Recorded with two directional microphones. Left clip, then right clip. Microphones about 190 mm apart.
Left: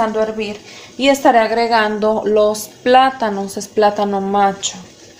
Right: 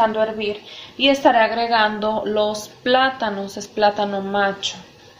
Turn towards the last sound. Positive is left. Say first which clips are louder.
# left 5 dB
turn(degrees=50)  # may be behind; listen again after turning